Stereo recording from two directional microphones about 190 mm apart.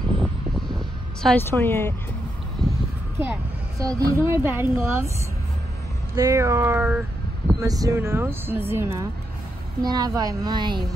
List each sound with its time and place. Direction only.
1.2 s speech: 10° left (ahead or behind)
3.2 s speech: 15° right (ahead or behind)
6.1 s speech: 15° right (ahead or behind)